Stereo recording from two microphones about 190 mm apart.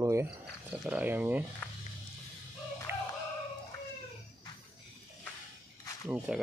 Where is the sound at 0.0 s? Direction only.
15° right (ahead or behind).